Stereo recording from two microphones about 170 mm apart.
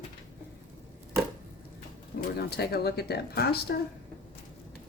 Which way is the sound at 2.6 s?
70° left (ahead or behind).